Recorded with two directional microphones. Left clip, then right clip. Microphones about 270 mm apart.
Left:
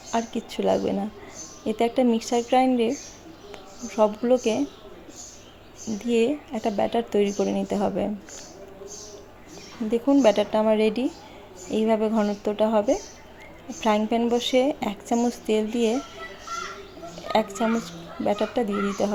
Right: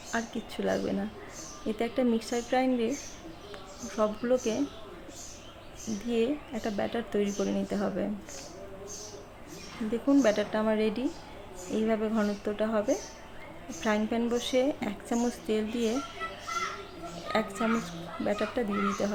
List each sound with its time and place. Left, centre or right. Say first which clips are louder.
0.1 s a woman's voice: left 7 dB; centre
6.1 s a woman's voice: left 7 dB; centre
9.9 s a woman's voice: left 6 dB; centre
17.3 s a woman's voice: left 6 dB; centre